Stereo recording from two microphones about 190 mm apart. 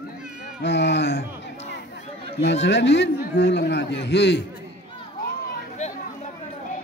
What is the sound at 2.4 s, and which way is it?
A man's voice, 65° left (ahead or behind).